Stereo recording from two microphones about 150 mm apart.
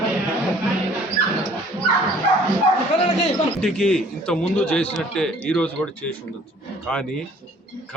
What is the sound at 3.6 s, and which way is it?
A man's voice, 5° left (ahead or behind).